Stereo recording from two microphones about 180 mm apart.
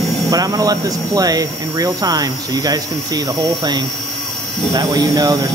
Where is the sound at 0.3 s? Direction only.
20° right (ahead or behind).